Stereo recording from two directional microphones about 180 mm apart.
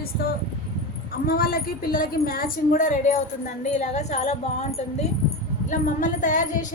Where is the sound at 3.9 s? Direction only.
40° left (ahead or behind).